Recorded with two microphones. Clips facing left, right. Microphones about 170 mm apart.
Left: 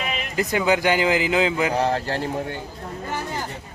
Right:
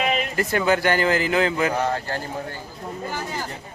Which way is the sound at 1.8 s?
30° left (ahead or behind).